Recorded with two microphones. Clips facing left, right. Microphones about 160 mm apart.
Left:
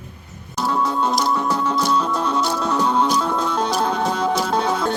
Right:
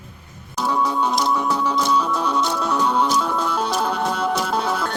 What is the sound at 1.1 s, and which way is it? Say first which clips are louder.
Music: even; 5° left (ahead or behind).